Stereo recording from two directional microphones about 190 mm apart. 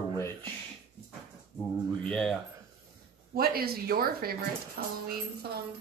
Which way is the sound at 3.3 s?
55° right (ahead or behind).